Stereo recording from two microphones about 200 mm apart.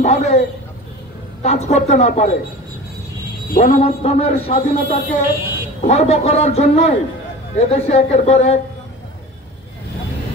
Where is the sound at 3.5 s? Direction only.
35° left (ahead or behind).